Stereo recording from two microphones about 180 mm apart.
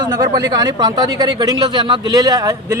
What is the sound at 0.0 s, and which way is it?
Speech, 20° right (ahead or behind).